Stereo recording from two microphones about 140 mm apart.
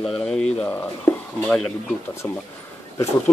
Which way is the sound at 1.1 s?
15° left (ahead or behind).